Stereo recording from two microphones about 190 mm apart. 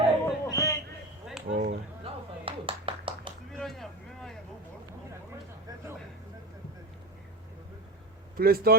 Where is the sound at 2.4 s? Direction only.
30° right (ahead or behind).